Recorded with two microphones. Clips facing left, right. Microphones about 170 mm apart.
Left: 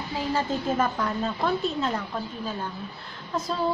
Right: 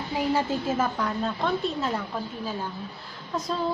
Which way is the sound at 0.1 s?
10° right (ahead or behind).